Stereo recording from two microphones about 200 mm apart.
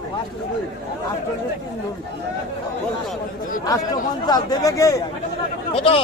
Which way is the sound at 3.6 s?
20° left (ahead or behind).